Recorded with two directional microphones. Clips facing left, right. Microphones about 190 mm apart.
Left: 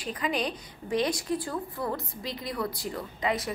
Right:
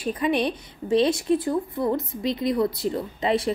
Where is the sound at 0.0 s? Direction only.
25° right (ahead or behind).